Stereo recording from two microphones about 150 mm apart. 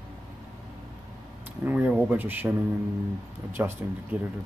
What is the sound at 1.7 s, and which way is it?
Speech, 10° right (ahead or behind).